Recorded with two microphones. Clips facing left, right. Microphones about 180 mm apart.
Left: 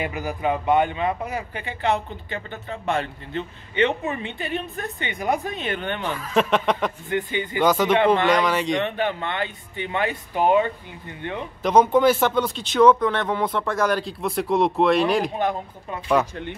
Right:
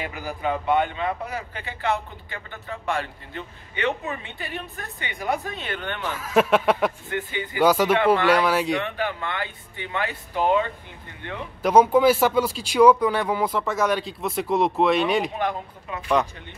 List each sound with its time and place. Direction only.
0.0 s a man's voice: 20° left (ahead or behind)
6.1 s speech: 5° right (ahead or behind)
7.1 s a man's voice: 20° left (ahead or behind)
7.6 s speech: 10° right (ahead or behind)
8.8 s a man's voice: 25° left (ahead or behind)
11.6 s speech: 10° right (ahead or behind)